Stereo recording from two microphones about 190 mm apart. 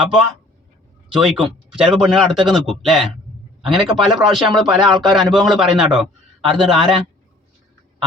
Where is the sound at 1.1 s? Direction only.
5° right (ahead or behind).